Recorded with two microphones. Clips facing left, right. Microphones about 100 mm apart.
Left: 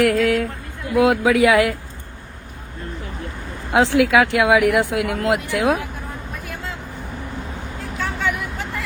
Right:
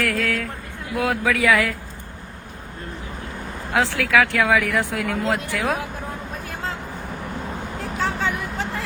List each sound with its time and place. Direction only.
0.0 s speech: 20° left (ahead or behind)
3.7 s speech: 20° left (ahead or behind)
7.9 s vehicle: 35° right (ahead or behind)